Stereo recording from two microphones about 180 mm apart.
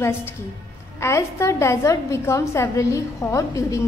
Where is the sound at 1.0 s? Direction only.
15° left (ahead or behind).